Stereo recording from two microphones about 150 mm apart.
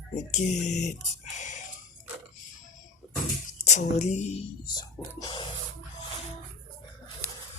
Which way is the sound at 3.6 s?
50° left (ahead or behind).